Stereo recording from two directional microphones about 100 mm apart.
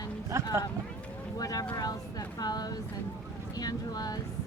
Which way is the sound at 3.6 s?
40° left (ahead or behind).